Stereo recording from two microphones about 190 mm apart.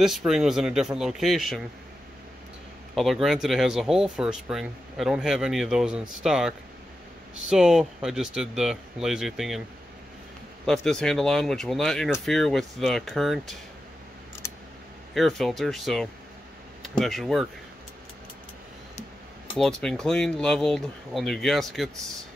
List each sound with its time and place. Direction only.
0.0 s speech: centre (ahead or behind)
2.9 s speech: centre (ahead or behind)
10.6 s speech: centre (ahead or behind)
15.1 s speech: centre (ahead or behind)
19.5 s speech: 5° left (ahead or behind)